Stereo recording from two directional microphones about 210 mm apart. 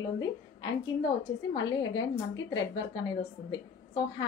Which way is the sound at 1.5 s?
20° left (ahead or behind).